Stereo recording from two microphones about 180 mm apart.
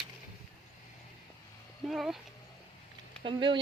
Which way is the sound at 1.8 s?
Centre (ahead or behind).